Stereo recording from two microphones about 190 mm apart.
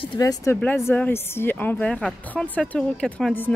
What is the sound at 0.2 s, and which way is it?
Speech, 15° left (ahead or behind).